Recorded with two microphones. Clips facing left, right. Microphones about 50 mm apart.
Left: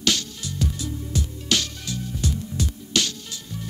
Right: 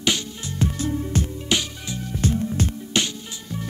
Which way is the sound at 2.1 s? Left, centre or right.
Right.